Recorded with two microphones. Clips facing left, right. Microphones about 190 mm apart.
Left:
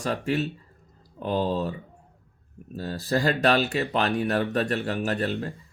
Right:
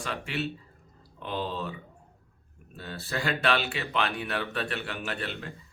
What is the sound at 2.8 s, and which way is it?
Speech, 35° left (ahead or behind).